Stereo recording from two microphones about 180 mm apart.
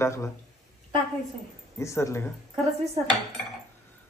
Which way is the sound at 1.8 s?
15° left (ahead or behind).